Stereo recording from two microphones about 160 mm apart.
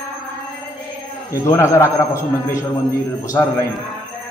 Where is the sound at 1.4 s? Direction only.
20° left (ahead or behind).